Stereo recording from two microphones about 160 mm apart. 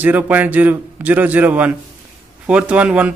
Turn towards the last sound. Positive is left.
turn(degrees=-10)  # may be behind; listen again after turning